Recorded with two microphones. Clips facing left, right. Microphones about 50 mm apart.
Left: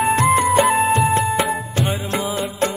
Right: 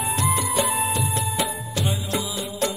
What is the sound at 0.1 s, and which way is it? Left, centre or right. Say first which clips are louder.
Music: left 8 dB; left.